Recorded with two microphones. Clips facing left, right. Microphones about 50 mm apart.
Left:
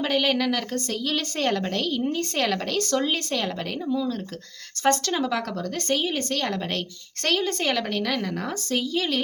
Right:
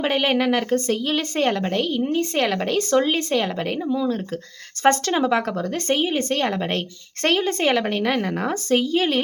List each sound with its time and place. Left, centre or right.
0.0 s speech: right